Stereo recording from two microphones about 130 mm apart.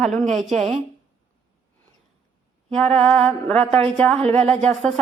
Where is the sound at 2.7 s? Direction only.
5° left (ahead or behind).